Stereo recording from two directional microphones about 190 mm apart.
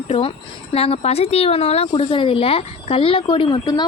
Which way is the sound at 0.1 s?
30° left (ahead or behind).